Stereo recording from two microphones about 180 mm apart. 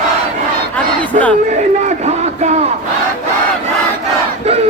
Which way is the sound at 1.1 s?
40° right (ahead or behind).